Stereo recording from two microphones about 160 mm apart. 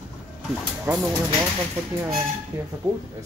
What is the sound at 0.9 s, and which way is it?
Speech, 15° right (ahead or behind).